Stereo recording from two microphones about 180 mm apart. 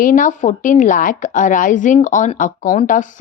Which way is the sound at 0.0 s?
45° left (ahead or behind).